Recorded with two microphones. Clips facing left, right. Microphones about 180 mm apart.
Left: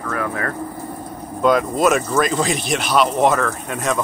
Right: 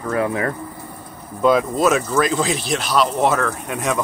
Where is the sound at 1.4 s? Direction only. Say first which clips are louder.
Even; centre (ahead or behind).